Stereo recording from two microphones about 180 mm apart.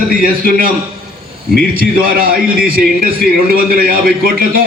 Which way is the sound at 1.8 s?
55° right (ahead or behind).